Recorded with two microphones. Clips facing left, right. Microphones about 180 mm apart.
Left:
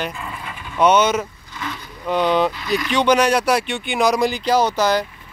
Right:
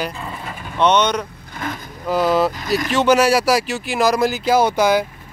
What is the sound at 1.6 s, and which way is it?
Vehicle, 55° right (ahead or behind).